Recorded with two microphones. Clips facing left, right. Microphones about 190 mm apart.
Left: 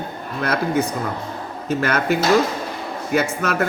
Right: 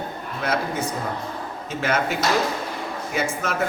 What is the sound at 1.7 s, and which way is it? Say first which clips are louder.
Speech: left 3 dB; 65° left (ahead or behind).